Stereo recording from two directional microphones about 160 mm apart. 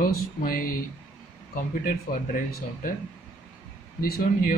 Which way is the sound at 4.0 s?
65° left (ahead or behind).